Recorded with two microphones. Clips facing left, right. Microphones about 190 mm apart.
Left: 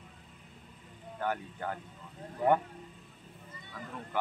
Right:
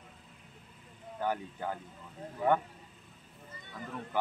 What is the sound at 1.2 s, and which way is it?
Speech, 15° right (ahead or behind).